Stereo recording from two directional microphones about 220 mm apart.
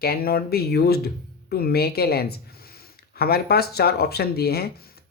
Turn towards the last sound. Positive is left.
turn(degrees=45)  # may be behind; listen again after turning